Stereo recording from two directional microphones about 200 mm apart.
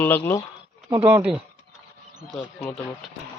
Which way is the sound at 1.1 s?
10° right (ahead or behind).